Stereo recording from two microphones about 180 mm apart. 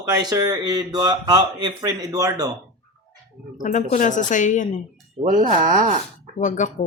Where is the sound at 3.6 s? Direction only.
45° left (ahead or behind).